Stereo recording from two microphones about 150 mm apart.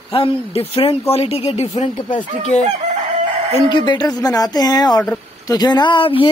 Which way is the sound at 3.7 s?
30° left (ahead or behind).